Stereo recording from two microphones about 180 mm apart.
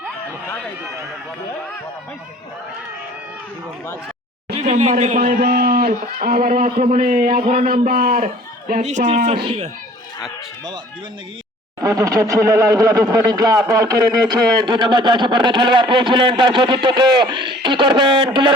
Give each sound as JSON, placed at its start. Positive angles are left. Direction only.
{"t": 4.5, "sound": "a man's voice", "side_deg": -40}
{"t": 11.8, "sound": "speech", "side_deg": -20}